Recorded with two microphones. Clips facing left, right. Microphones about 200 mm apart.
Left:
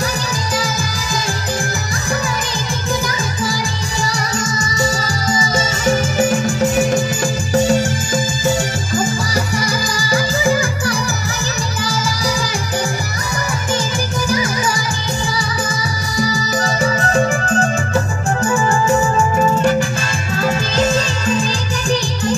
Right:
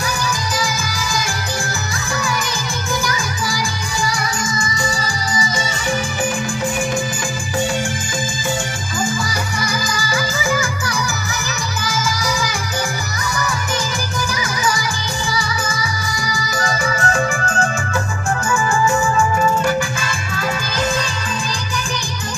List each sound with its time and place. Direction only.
5.0 s music: 45° left (ahead or behind)
9.7 s music: 35° left (ahead or behind)
16.5 s music: 30° left (ahead or behind)
18.5 s music: 35° left (ahead or behind)